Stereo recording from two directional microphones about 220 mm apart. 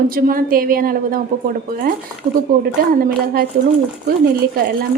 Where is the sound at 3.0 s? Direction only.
45° right (ahead or behind).